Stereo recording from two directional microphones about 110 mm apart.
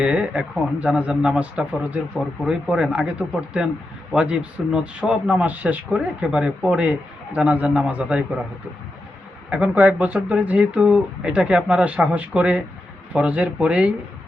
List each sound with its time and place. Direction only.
0.0 s speech: 10° right (ahead or behind)
9.5 s speech: 15° right (ahead or behind)